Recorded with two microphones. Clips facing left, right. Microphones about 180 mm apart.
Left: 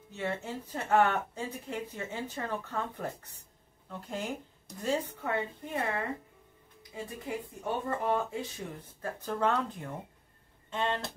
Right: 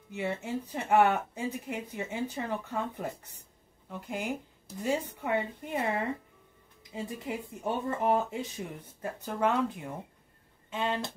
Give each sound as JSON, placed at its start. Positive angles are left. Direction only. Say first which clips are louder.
{"t": 0.1, "sound": "speech", "louder": "right 2 dB", "side_deg": -10}
{"t": 4.1, "sound": "speech", "louder": "right 2 dB", "side_deg": -10}
{"t": 9.0, "sound": "speech", "louder": "right 1 dB", "side_deg": -10}